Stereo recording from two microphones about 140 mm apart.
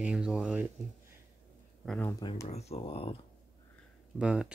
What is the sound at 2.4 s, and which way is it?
Speech, 50° left (ahead or behind).